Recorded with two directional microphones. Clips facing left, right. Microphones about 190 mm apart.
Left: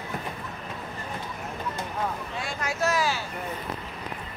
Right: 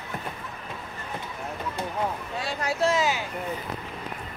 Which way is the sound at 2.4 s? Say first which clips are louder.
Right 3 dB; 35° right (ahead or behind).